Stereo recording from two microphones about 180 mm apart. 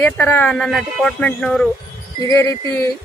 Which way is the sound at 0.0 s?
10° left (ahead or behind).